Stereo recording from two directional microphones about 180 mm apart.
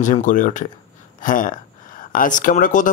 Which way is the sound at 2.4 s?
50° left (ahead or behind).